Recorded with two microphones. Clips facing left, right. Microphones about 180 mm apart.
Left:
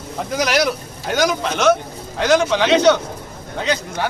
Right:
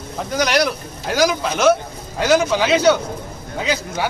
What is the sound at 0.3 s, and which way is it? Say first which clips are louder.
A man's voice: even; centre (ahead or behind).